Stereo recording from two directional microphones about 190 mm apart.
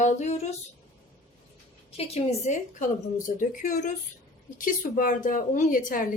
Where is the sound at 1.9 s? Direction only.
35° left (ahead or behind).